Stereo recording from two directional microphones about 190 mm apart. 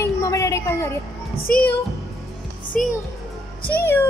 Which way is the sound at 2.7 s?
5° left (ahead or behind).